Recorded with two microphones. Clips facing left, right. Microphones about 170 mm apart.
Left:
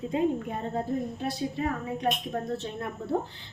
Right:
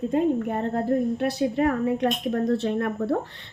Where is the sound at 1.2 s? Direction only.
70° right (ahead or behind).